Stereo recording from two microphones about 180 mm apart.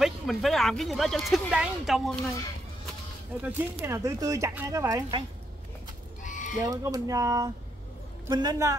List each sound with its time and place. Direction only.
0.0 s speech: centre (ahead or behind)
3.4 s speech: 15° right (ahead or behind)
6.2 s fowl: 45° left (ahead or behind)
6.6 s speech: 20° right (ahead or behind)